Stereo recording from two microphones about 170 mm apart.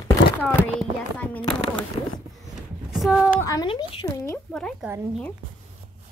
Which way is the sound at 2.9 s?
5° right (ahead or behind).